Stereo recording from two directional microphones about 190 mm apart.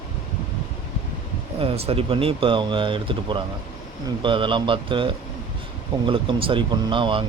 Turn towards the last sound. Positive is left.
turn(degrees=-25)  # may be behind; listen again after turning